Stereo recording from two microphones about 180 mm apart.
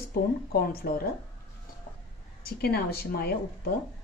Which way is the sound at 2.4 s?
60° left (ahead or behind).